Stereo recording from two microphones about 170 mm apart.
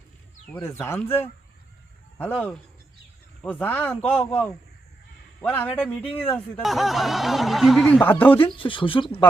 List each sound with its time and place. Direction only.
0.6 s a man's voice: 15° left (ahead or behind); by 7.9 s centre (ahead or behind)
8.4 s speech: 30° left (ahead or behind)